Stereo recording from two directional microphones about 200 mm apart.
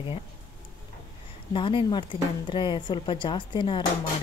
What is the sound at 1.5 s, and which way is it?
A woman's voice, 25° left (ahead or behind).